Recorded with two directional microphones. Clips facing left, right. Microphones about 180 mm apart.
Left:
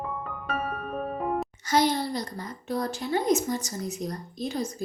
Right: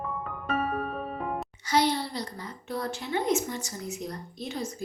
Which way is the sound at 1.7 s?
45° left (ahead or behind).